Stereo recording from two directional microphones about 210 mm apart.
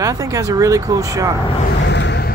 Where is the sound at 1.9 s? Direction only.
55° left (ahead or behind).